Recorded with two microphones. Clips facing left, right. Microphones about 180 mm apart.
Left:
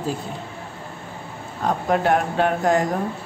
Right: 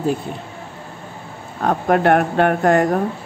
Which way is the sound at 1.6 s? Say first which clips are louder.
Right 4 dB; 60° right (ahead or behind).